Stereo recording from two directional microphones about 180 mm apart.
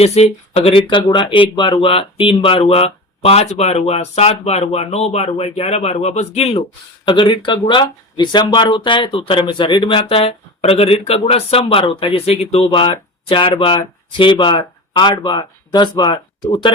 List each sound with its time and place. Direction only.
0.0 s speech: 35° left (ahead or behind)